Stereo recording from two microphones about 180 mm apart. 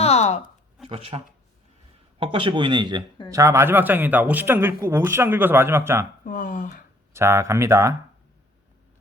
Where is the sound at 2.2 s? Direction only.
25° right (ahead or behind).